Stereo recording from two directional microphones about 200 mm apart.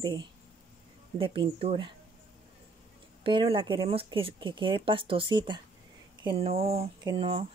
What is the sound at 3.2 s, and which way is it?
Speech, 25° right (ahead or behind).